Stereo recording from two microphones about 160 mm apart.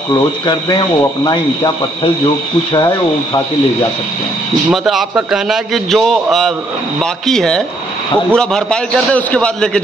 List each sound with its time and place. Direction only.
0.1 s speech: 25° left (ahead or behind)
4.6 s a man's voice: 5° right (ahead or behind)